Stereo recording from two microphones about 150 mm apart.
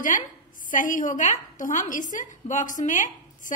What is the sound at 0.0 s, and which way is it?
A woman's voice, 60° left (ahead or behind).